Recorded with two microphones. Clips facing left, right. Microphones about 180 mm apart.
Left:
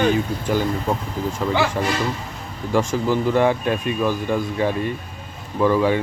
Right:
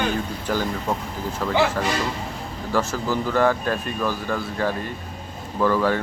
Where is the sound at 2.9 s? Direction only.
15° left (ahead or behind).